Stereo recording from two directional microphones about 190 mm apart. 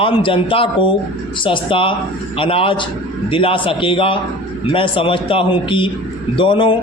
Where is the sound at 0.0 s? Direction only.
25° left (ahead or behind).